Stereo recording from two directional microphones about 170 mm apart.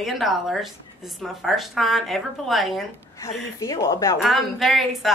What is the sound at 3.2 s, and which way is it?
Speech, 20° left (ahead or behind).